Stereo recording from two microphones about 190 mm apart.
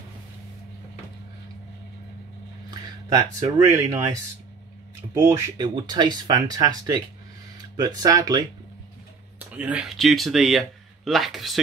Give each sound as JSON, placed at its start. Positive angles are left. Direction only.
{"t": 2.7, "sound": "speech", "side_deg": -20}
{"t": 9.4, "sound": "speech", "side_deg": -10}